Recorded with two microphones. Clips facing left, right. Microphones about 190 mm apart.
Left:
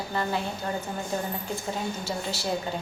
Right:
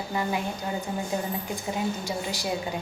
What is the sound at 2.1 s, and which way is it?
Speech, 15° right (ahead or behind).